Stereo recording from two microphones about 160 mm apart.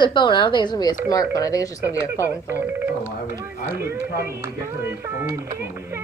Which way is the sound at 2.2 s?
15° right (ahead or behind).